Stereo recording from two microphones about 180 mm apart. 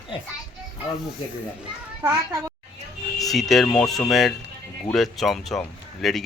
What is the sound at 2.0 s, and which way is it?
Speech, 15° right (ahead or behind).